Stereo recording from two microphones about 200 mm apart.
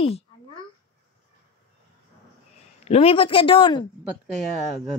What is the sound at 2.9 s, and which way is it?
Speech, 30° left (ahead or behind).